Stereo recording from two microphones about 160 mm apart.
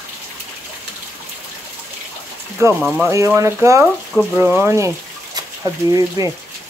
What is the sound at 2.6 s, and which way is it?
Speech, 15° right (ahead or behind).